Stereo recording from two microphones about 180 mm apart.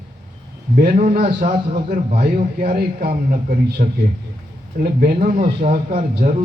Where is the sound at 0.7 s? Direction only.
50° right (ahead or behind).